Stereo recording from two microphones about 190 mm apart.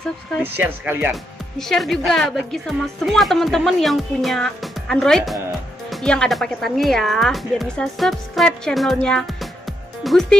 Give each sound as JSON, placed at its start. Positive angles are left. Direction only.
{"t": 0.4, "sound": "speech", "side_deg": -10}
{"t": 1.6, "sound": "a woman's voice", "side_deg": 0}